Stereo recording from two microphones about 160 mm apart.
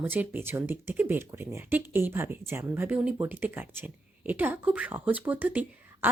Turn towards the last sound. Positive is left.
turn(degrees=-10)  # may be behind; listen again after turning